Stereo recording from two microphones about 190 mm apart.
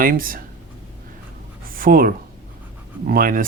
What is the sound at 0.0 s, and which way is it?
Speech, 50° right (ahead or behind).